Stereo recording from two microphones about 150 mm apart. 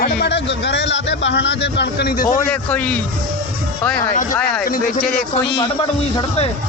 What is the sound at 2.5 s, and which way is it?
Speech, 10° left (ahead or behind).